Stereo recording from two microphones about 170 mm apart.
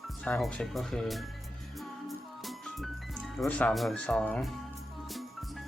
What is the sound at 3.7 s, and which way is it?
Speech, centre (ahead or behind).